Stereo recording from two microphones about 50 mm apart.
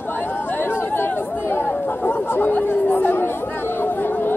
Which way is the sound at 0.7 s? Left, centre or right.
Left.